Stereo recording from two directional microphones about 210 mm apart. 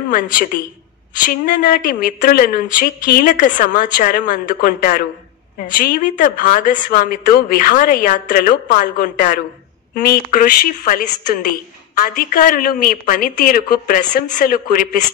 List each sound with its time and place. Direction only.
0.1 s a woman's voice: 40° left (ahead or behind)